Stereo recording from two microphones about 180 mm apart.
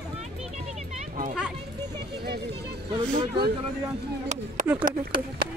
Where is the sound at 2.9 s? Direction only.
25° right (ahead or behind).